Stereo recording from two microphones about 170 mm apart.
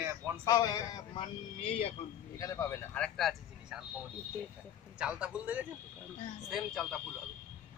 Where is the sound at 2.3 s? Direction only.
20° left (ahead or behind); by 3.8 s centre (ahead or behind).